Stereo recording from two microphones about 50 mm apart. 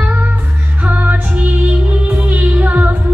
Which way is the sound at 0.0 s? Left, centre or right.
Right.